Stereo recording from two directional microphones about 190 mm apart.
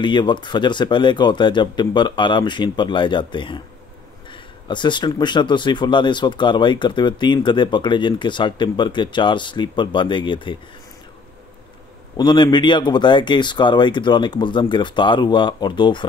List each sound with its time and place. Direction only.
0.0 s speech: 25° left (ahead or behind)
12.2 s speech: 20° left (ahead or behind)